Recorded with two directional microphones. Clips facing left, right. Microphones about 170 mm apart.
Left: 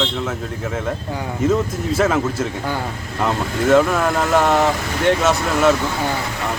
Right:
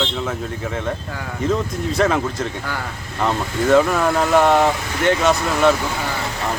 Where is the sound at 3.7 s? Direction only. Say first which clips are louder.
Even; centre (ahead or behind).